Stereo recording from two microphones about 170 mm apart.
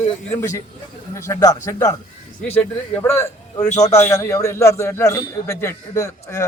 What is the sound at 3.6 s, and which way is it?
Speech, 40° left (ahead or behind).